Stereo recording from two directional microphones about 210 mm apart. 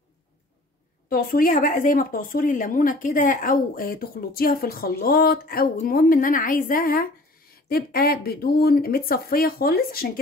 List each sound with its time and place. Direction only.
1.0 s speech: 45° left (ahead or behind)